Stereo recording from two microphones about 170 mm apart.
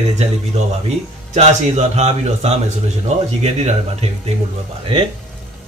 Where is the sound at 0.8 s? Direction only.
40° right (ahead or behind).